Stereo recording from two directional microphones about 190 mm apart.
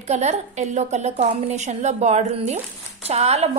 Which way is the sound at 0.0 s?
35° right (ahead or behind).